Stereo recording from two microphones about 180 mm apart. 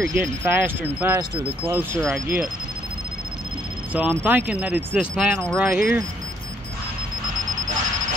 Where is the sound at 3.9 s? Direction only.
10° right (ahead or behind).